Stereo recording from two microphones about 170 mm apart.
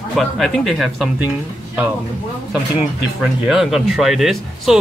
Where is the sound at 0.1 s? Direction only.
Centre (ahead or behind).